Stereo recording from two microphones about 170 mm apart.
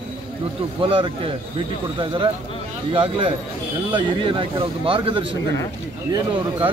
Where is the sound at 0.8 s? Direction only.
30° right (ahead or behind).